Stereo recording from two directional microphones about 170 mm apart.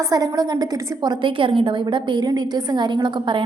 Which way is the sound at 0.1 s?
20° right (ahead or behind).